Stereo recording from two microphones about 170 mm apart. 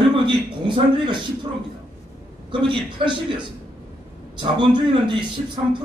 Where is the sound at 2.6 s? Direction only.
30° right (ahead or behind).